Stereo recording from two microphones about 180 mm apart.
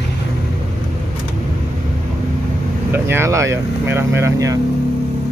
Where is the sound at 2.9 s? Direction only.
15° right (ahead or behind).